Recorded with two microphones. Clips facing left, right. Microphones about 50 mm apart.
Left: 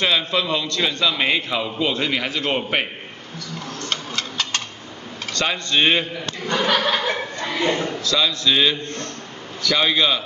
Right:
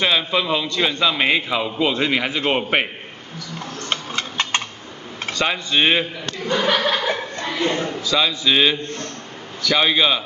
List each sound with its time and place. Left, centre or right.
0.0 s a man's voice: centre
3.9 s a sound: right
5.3 s a man's voice: centre
7.5 s a man's voice: centre
8.0 s a man's voice: centre